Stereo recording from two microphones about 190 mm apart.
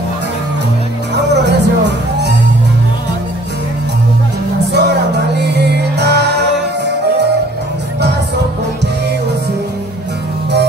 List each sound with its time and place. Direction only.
1.1 s music: 65° right (ahead or behind)
4.7 s music: 60° right (ahead or behind)